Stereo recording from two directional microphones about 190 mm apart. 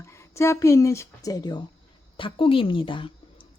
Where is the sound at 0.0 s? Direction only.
15° left (ahead or behind).